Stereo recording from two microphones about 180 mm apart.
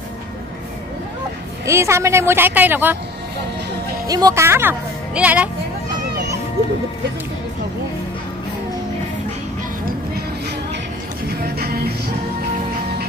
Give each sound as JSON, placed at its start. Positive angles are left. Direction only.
{"t": 1.7, "sound": "a woman's voice", "side_deg": -15}
{"t": 4.1, "sound": "speech", "side_deg": -20}
{"t": 11.4, "sound": "music", "side_deg": -60}